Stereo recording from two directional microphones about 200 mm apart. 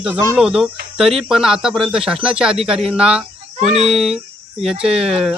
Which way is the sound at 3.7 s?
30° right (ahead or behind).